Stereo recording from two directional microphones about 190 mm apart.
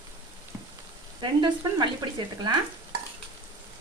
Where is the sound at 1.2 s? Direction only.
25° right (ahead or behind).